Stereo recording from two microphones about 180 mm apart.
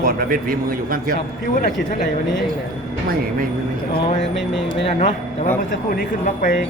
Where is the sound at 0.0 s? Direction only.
55° right (ahead or behind).